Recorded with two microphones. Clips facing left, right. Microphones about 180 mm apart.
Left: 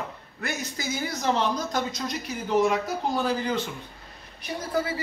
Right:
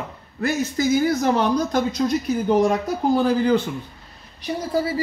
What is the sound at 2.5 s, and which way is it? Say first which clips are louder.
Speech: right 4 dB; 35° right (ahead or behind).